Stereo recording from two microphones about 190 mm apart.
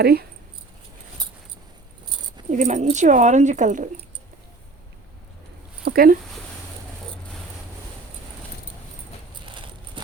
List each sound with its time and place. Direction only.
0.0 s speech: 55° right (ahead or behind)
2.5 s speech: 40° right (ahead or behind)
5.8 s a sound: 50° right (ahead or behind)